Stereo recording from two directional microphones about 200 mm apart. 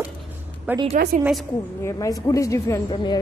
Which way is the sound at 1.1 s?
40° right (ahead or behind).